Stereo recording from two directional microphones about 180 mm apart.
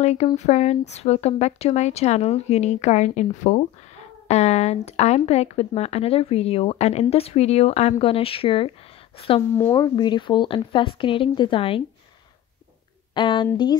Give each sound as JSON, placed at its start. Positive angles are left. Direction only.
{"t": 0.0, "sound": "speech", "side_deg": 40}
{"t": 9.6, "sound": "speech", "side_deg": 20}
{"t": 13.1, "sound": "speech", "side_deg": 25}